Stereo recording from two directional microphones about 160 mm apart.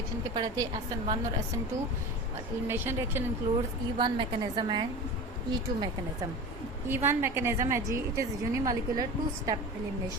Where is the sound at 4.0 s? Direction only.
30° right (ahead or behind).